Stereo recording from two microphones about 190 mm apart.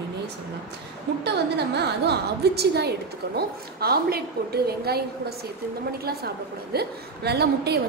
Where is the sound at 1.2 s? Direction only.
60° right (ahead or behind).